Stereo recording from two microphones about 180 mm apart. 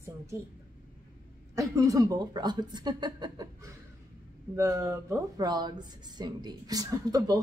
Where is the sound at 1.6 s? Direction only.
15° right (ahead or behind).